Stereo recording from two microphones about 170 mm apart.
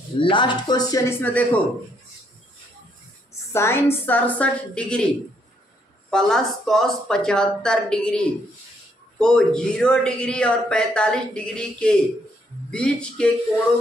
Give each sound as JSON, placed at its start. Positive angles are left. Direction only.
{"t": 0.2, "sound": "speech", "side_deg": 30}
{"t": 3.5, "sound": "a woman's voice", "side_deg": 15}
{"t": 9.2, "sound": "a woman's voice", "side_deg": 5}